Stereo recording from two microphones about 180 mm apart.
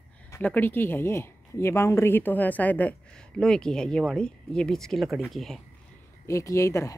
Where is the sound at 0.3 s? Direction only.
10° left (ahead or behind).